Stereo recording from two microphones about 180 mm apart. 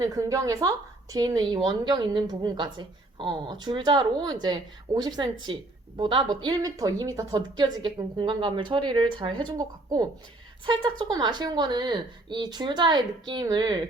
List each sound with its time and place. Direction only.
0.0 s a woman's voice: 20° right (ahead or behind)